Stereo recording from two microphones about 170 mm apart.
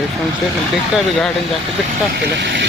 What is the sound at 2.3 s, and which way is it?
Speech, 90° right.